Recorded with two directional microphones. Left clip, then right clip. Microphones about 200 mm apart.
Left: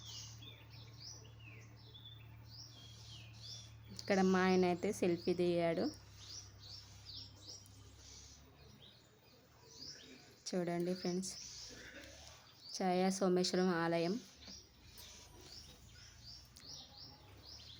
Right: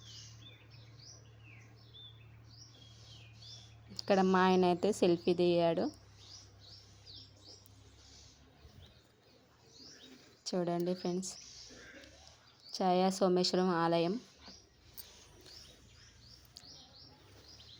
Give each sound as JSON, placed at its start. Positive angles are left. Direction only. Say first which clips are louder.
{"t": 3.9, "sound": "a woman's voice", "louder": "right 5 dB", "side_deg": -15}
{"t": 10.4, "sound": "a woman's voice", "louder": "right 4 dB", "side_deg": -10}
{"t": 12.7, "sound": "a woman's voice", "louder": "right 5 dB", "side_deg": -15}